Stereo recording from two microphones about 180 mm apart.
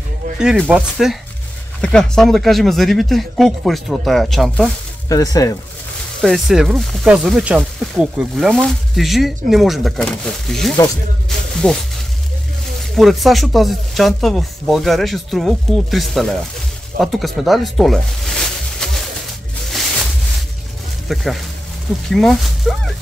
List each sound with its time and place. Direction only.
0.4 s speech: 5° right (ahead or behind)
5.0 s speech: 20° left (ahead or behind)
6.2 s speech: centre (ahead or behind)
12.9 s speech: centre (ahead or behind)
17.0 s a sound: centre (ahead or behind)
21.1 s speech: centre (ahead or behind)